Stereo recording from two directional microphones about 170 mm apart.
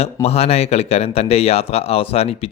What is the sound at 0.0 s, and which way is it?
Speech, 35° left (ahead or behind).